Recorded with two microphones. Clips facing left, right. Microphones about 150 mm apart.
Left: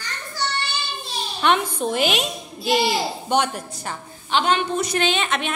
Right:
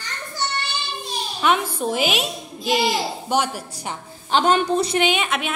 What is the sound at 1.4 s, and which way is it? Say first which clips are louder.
A child's voice: even; 5° right (ahead or behind).